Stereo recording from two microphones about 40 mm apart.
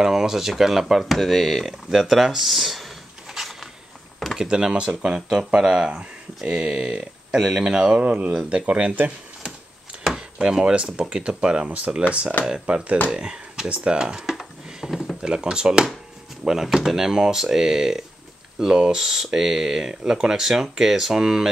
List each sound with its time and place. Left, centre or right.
0.0 s speech: centre
1.1 s speech: centre
3.3 s a sound: centre
4.4 s speech: centre
5.0 s speech: centre
8.6 s speech: right
10.6 s speech: right
14.8 s a sound: centre
15.2 s speech: centre